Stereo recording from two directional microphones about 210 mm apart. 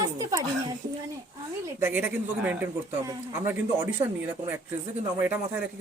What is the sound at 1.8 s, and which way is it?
A woman's voice, 10° right (ahead or behind).